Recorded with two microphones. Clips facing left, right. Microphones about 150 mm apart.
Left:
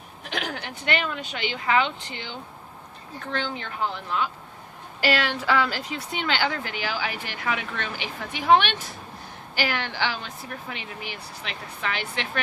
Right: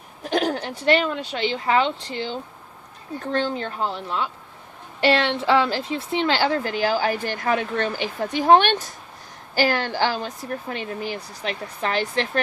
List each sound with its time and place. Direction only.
0.2 s speech: 40° right (ahead or behind)
3.3 s a woman's voice: 35° right (ahead or behind)